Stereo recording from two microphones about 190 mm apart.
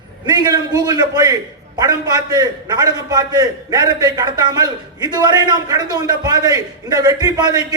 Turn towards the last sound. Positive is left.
turn(degrees=-20)  # may be behind; listen again after turning